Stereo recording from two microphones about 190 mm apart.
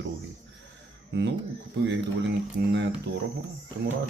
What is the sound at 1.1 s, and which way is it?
Speech, 70° right (ahead or behind).